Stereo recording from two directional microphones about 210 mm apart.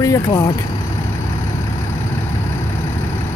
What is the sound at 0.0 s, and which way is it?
Speech, 15° left (ahead or behind).